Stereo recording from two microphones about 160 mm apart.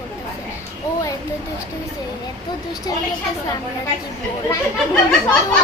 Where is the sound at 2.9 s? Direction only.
25° left (ahead or behind).